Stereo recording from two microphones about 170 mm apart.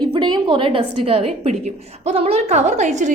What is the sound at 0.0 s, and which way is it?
A woman's voice, 25° right (ahead or behind).